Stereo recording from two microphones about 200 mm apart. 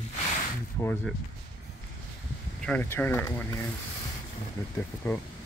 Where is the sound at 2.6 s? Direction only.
5° left (ahead or behind).